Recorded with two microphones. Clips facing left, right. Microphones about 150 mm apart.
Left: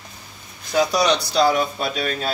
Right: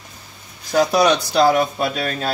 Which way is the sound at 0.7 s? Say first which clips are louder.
Right 3 dB; 50° right (ahead or behind).